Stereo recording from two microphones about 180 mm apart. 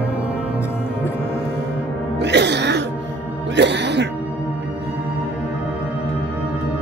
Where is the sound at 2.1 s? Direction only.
70° right (ahead or behind).